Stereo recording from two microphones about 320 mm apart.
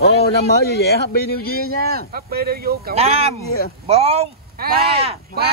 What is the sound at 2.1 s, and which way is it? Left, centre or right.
Speech, right.